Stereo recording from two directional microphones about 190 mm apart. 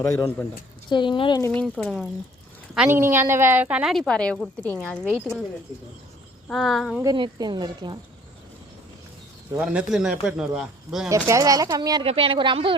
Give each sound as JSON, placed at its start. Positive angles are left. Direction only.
{"t": 0.0, "sound": "speech", "side_deg": 15}
{"t": 1.4, "sound": "a woman's voice", "side_deg": 10}
{"t": 2.7, "sound": "a woman's voice", "side_deg": -10}
{"t": 6.5, "sound": "a woman's voice", "side_deg": 0}
{"t": 7.0, "sound": "speech", "side_deg": -20}
{"t": 9.6, "sound": "a woman's voice", "side_deg": -5}
{"t": 11.3, "sound": "speech", "side_deg": -15}